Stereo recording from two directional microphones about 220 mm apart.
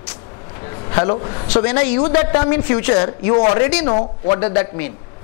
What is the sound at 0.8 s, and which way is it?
A man's voice, 20° left (ahead or behind).